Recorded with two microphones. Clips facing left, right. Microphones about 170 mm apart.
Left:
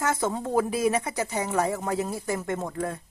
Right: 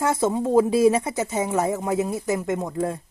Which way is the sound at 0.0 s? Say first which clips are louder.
Right 5 dB; 25° right (ahead or behind).